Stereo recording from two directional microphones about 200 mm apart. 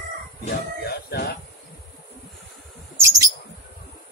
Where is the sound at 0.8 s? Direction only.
55° left (ahead or behind).